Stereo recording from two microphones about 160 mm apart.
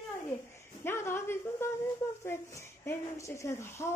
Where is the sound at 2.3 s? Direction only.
15° left (ahead or behind).